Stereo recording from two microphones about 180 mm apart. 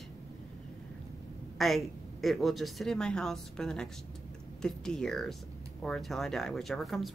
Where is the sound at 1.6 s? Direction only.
Centre (ahead or behind).